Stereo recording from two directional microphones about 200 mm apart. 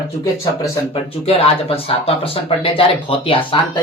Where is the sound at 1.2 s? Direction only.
30° left (ahead or behind).